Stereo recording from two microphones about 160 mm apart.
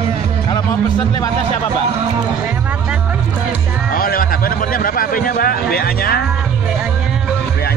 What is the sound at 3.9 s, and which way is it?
Speech, 65° left (ahead or behind).